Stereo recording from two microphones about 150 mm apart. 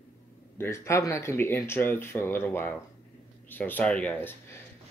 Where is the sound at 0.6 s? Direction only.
20° left (ahead or behind).